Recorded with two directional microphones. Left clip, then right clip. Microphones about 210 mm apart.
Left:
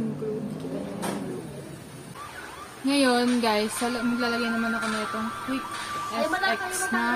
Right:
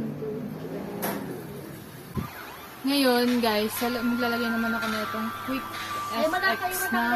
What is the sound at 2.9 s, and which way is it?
Speech, 5° left (ahead or behind).